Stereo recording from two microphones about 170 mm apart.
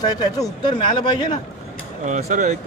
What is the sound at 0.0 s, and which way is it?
Speech, 25° left (ahead or behind).